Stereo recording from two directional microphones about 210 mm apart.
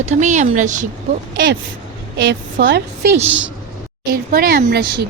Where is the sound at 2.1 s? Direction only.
55° right (ahead or behind).